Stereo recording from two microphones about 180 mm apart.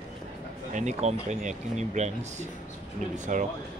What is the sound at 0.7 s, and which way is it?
Speech, 40° right (ahead or behind).